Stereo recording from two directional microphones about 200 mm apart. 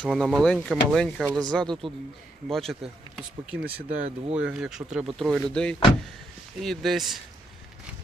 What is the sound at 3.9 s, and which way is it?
Speech, 35° right (ahead or behind).